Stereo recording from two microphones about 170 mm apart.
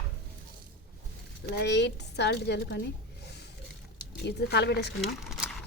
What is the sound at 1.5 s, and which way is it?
Speech, 85° left.